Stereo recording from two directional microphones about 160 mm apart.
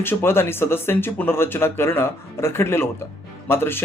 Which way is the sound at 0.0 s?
15° left (ahead or behind).